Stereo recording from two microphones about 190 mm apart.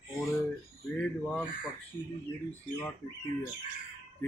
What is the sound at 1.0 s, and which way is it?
Speech, 5° left (ahead or behind).